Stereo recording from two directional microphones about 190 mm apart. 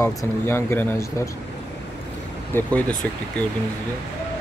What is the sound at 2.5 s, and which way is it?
Speech, 10° left (ahead or behind).